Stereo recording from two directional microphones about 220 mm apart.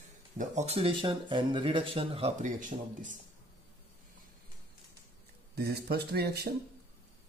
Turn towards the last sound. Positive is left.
turn(degrees=-45)  # may be behind; listen again after turning